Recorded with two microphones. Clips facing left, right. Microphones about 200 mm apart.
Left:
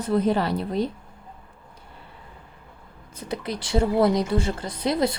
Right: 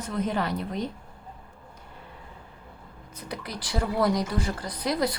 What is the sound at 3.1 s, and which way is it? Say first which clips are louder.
A woman's voice: left 6 dB; 25° left (ahead or behind).